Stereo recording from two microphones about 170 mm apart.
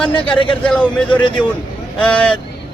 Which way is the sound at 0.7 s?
10° left (ahead or behind).